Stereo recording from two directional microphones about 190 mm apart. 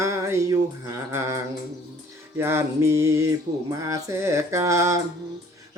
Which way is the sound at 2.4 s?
15° right (ahead or behind).